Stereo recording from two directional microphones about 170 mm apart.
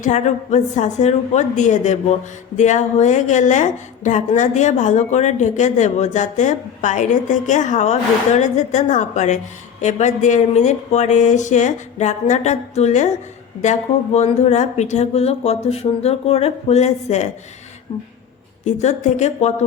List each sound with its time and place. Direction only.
0.0 s a woman's voice: 45° left (ahead or behind)
18.6 s a woman's voice: 45° left (ahead or behind)